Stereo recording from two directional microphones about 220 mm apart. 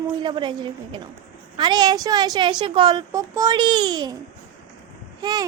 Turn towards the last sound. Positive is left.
turn(degrees=-20)  # may be behind; listen again after turning